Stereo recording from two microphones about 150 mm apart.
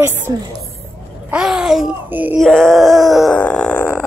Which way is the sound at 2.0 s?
10° right (ahead or behind).